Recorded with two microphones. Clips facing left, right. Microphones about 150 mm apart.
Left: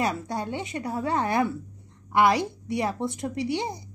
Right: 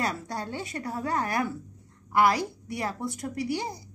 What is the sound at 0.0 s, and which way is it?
A woman's voice, 20° left (ahead or behind).